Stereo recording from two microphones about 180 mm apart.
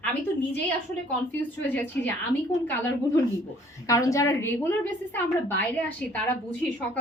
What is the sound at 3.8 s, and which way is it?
A woman's voice, 15° left (ahead or behind).